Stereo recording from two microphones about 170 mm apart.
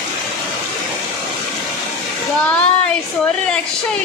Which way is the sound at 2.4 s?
5° left (ahead or behind).